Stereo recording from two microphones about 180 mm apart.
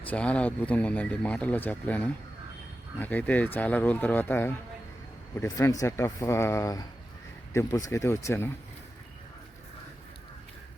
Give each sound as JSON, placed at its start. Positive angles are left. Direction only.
{"t": 0.1, "sound": "speech", "side_deg": 5}